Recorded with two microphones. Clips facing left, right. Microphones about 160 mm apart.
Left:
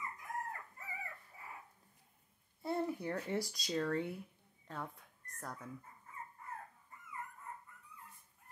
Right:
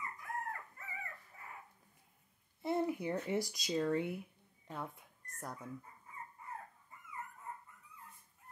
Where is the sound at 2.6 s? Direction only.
15° right (ahead or behind).